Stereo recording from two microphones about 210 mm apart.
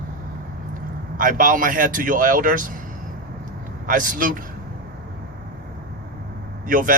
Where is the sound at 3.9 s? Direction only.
40° right (ahead or behind).